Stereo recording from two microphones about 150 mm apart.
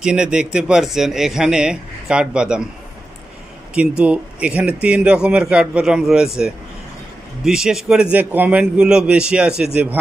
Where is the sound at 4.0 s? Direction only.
10° right (ahead or behind).